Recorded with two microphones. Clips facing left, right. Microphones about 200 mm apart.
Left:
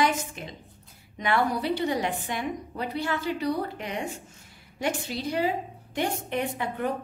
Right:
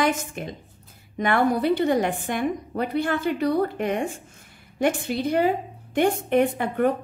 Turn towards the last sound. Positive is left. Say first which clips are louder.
# right 8 dB
turn(degrees=-55)  # may be behind; listen again after turning